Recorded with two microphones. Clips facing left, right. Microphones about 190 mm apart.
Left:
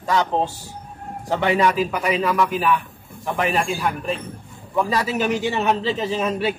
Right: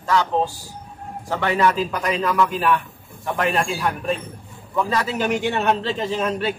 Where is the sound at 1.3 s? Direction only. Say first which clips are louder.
Left 1 dB; 15° left (ahead or behind).